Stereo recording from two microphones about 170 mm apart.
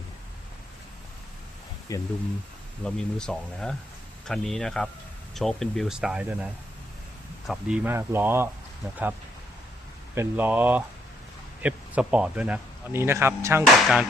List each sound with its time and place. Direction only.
1.9 s speech: 20° left (ahead or behind)
2.8 s speech: 5° left (ahead or behind); by 8.4 s 15° right (ahead or behind)
10.2 s speech: 10° right (ahead or behind)
13.8 s speech: centre (ahead or behind)